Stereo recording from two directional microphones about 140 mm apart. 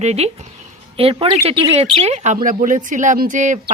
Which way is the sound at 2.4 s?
65° right (ahead or behind).